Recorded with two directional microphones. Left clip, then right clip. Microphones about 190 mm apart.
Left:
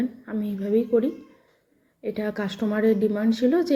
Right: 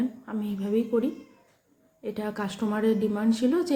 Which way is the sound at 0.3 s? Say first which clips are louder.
Left 4 dB; 15° left (ahead or behind).